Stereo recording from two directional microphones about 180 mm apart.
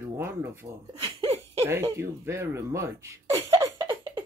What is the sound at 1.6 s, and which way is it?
Speech, 15° right (ahead or behind).